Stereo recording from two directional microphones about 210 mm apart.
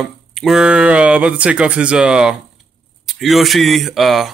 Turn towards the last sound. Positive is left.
turn(degrees=0)  # may be behind; listen again after turning